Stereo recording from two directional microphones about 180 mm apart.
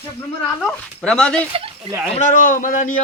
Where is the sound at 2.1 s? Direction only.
45° left (ahead or behind).